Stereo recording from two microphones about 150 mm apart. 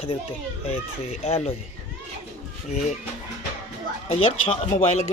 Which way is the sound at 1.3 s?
45° left (ahead or behind).